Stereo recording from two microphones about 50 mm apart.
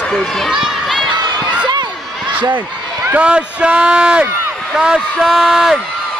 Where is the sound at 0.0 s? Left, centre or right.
Centre.